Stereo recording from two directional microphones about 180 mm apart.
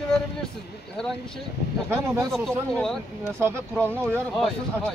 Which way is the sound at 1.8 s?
15° right (ahead or behind).